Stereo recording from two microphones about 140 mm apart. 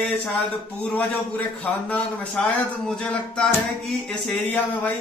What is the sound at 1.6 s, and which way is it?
A man's voice, 10° left (ahead or behind).